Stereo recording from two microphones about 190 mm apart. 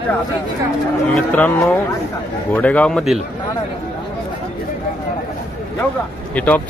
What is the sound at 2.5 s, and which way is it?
Speech, 5° left (ahead or behind).